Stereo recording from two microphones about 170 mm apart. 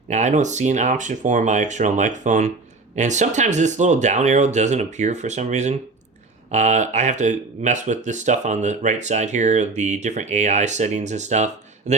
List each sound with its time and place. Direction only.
0.1 s speech: 45° right (ahead or behind)